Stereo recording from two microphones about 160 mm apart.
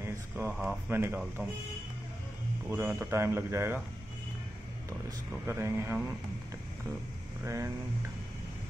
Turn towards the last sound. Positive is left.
turn(degrees=-15)  # may be behind; listen again after turning